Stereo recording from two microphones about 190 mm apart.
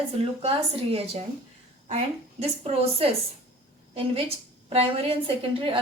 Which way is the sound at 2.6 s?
30° right (ahead or behind).